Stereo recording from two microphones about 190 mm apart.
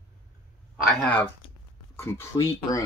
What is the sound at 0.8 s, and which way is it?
Speech, 5° left (ahead or behind).